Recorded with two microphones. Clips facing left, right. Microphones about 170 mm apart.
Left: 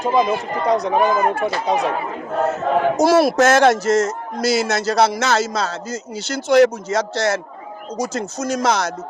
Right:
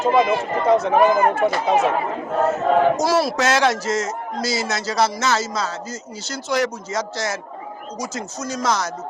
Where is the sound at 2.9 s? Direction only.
55° left (ahead or behind).